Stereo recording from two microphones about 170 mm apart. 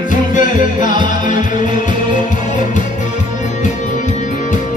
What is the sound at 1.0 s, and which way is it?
Music, 25° right (ahead or behind).